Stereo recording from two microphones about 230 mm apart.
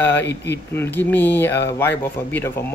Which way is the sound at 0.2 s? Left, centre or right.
Left.